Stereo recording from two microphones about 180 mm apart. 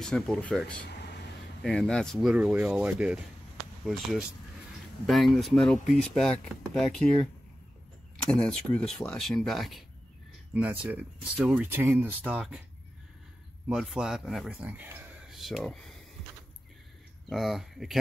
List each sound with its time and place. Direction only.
0.0 s speech: 5° left (ahead or behind)
0.8 s a sound: 70° left (ahead or behind)
1.6 s speech: centre (ahead or behind)
8.3 s speech: 5° left (ahead or behind)
13.7 s speech: 5° right (ahead or behind)
17.3 s speech: centre (ahead or behind)